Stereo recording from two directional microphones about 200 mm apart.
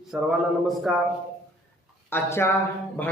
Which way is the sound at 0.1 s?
Centre (ahead or behind).